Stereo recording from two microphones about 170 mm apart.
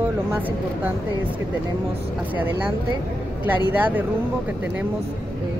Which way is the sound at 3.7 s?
10° right (ahead or behind).